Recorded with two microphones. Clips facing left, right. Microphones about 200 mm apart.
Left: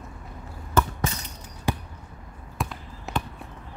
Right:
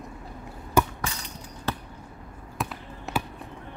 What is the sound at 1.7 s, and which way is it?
Basketball bounce, 15° left (ahead or behind).